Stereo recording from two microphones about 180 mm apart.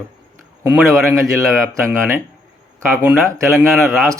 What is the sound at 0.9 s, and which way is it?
Speech, 15° right (ahead or behind).